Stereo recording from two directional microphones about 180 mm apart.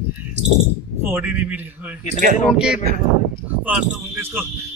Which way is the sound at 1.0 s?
10° right (ahead or behind).